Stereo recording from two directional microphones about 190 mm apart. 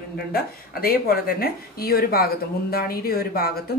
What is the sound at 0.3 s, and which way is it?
Speech, 55° left (ahead or behind).